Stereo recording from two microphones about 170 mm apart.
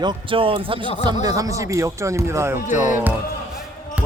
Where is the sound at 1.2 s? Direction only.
20° right (ahead or behind).